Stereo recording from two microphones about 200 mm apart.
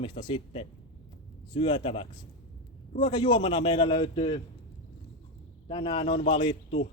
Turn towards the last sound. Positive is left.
turn(degrees=30)  # may be behind; listen again after turning